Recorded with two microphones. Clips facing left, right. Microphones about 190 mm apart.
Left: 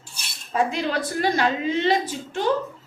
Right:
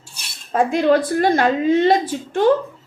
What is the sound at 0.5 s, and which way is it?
A woman's voice, 50° right (ahead or behind).